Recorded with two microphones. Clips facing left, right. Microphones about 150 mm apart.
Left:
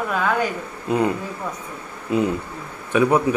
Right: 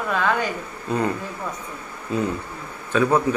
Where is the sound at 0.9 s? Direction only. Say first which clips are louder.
Left 3 dB; 15° left (ahead or behind).